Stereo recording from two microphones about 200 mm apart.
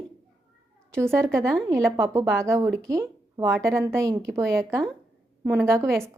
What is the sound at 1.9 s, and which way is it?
Speech, 15° right (ahead or behind).